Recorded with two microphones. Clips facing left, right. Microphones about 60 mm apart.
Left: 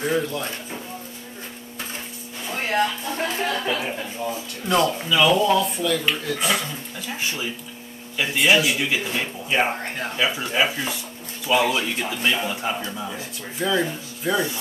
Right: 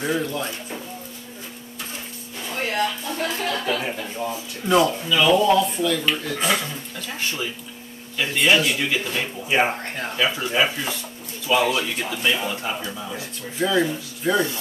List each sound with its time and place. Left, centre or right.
0.0 s speech: centre
2.7 s speech: left
3.7 s speech: centre
7.0 s speech: centre